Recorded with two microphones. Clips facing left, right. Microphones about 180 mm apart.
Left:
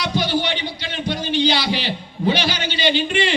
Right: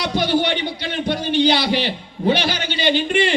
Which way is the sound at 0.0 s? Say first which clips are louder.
Right 2 dB; 55° right (ahead or behind).